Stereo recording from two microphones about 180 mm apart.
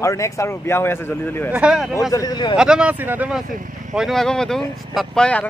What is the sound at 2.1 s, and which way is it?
Speech, 20° left (ahead or behind).